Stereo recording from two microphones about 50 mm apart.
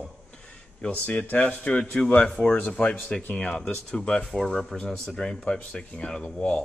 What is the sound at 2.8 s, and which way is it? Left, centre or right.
Speech, centre.